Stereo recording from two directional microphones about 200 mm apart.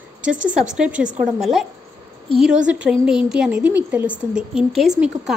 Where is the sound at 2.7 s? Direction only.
5° right (ahead or behind).